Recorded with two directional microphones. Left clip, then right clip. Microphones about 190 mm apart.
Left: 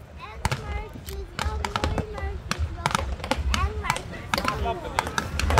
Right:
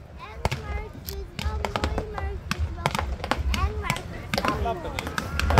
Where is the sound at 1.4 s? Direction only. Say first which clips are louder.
Left 1 dB; centre (ahead or behind).